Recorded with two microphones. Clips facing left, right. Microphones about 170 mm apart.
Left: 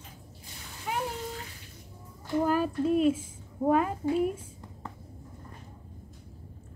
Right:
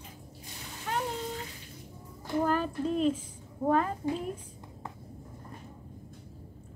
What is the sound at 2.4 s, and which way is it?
A woman's voice, 10° left (ahead or behind).